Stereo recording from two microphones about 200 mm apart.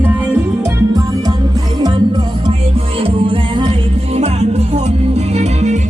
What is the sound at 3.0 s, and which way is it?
Music, 25° right (ahead or behind).